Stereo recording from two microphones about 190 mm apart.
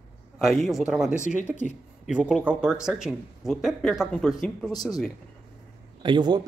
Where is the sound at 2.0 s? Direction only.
5° right (ahead or behind).